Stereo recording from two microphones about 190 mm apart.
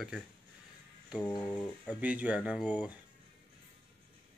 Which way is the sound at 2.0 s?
5° right (ahead or behind).